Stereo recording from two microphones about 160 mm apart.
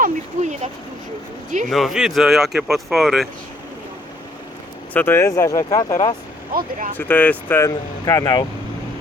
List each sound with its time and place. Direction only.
0.0 s speech: 50° right (ahead or behind)
1.7 s speech: centre (ahead or behind)
4.9 s speech: 15° left (ahead or behind)
6.5 s speech: 60° right (ahead or behind)
6.9 s speech: 10° left (ahead or behind)